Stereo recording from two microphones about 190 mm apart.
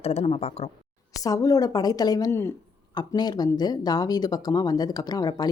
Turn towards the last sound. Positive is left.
turn(degrees=20)  # may be behind; listen again after turning